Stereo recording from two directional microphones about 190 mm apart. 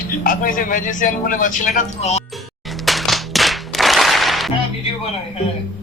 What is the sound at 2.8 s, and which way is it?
Music, centre (ahead or behind).